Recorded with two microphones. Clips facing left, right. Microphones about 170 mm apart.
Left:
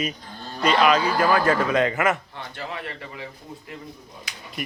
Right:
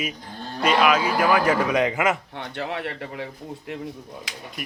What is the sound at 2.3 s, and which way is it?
Speech, 65° right (ahead or behind).